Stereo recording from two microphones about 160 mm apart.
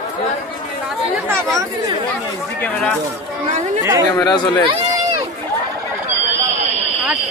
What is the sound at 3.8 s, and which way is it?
Speech, 20° right (ahead or behind).